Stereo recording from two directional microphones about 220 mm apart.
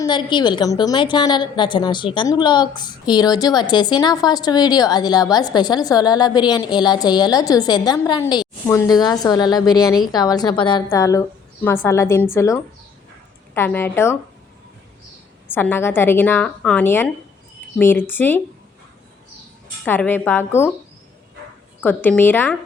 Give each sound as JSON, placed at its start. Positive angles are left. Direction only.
{"t": 0.0, "sound": "a woman's voice", "side_deg": 20}
{"t": 15.5, "sound": "a woman's voice", "side_deg": 10}
{"t": 19.8, "sound": "a woman's voice", "side_deg": 5}
{"t": 21.8, "sound": "a woman's voice", "side_deg": 5}